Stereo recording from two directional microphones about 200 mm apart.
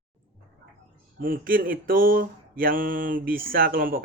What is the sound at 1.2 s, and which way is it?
Mantra, 45° right (ahead or behind).